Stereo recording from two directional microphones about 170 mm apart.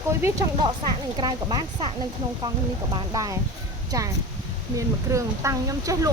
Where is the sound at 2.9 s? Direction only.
25° right (ahead or behind).